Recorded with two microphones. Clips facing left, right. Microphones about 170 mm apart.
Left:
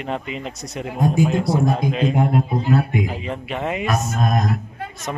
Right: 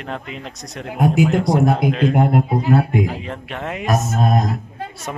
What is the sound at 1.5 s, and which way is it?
A man's voice, 70° right (ahead or behind).